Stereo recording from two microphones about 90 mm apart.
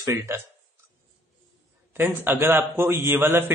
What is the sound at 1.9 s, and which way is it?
A man's voice, 25° right (ahead or behind).